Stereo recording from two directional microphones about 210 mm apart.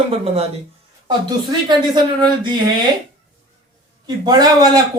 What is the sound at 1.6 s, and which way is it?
Speech, 20° right (ahead or behind).